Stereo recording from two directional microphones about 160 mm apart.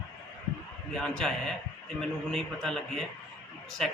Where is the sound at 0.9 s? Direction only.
5° left (ahead or behind).